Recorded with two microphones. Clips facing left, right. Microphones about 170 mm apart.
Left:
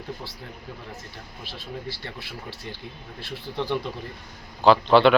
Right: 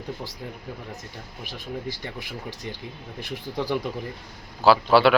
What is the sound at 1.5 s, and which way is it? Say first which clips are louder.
Speech: right 3 dB; 15° right (ahead or behind).